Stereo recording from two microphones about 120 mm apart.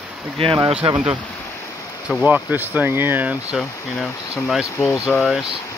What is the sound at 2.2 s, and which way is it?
Speech, 15° right (ahead or behind).